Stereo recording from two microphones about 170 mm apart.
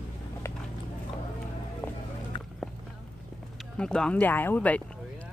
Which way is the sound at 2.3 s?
30° left (ahead or behind).